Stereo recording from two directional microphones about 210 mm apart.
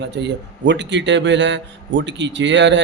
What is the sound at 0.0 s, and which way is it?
A man's voice, 55° right (ahead or behind).